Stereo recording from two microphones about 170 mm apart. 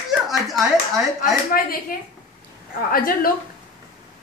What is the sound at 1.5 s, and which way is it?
Speech, 55° left (ahead or behind).